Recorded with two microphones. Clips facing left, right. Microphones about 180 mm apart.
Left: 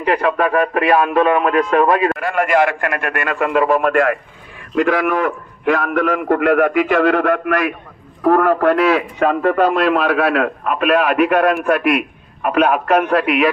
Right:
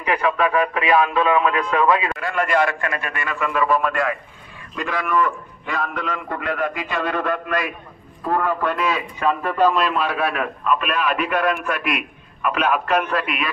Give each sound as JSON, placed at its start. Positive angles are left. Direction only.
{"t": 0.0, "sound": "a man's voice", "side_deg": 50}
{"t": 1.3, "sound": "a man's voice", "side_deg": 50}